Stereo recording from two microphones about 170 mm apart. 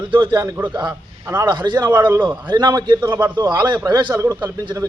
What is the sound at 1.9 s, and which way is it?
Speech, 10° right (ahead or behind).